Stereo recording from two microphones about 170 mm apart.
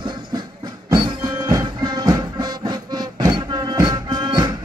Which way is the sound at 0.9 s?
25° right (ahead or behind).